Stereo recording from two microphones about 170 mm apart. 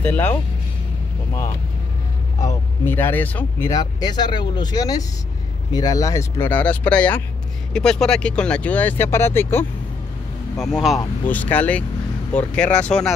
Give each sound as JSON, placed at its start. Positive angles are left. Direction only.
{"t": 0.0, "sound": "speech", "side_deg": 10}
{"t": 2.4, "sound": "speech", "side_deg": 15}
{"t": 10.6, "sound": "speech", "side_deg": 0}
{"t": 11.2, "sound": "speech", "side_deg": 10}